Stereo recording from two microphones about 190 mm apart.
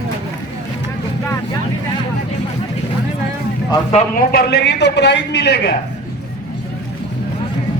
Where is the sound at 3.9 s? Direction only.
35° left (ahead or behind).